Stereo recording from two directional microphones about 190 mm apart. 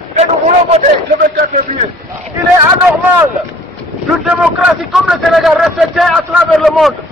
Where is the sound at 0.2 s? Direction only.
35° right (ahead or behind).